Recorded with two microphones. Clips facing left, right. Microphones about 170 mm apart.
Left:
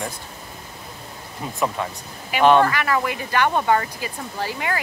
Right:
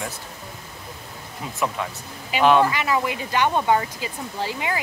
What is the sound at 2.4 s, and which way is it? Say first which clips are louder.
Speech: left 2 dB; centre (ahead or behind).